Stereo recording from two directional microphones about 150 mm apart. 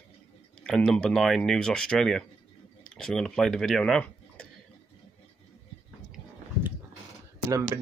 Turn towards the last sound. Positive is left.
turn(degrees=-20)  # may be behind; listen again after turning